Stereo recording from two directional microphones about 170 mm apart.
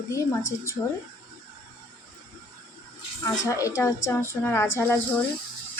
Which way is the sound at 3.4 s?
20° left (ahead or behind).